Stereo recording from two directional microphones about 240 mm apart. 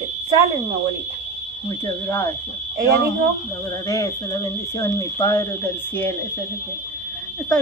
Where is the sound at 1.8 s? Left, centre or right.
Centre.